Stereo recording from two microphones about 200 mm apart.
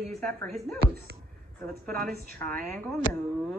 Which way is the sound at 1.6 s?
50° right (ahead or behind).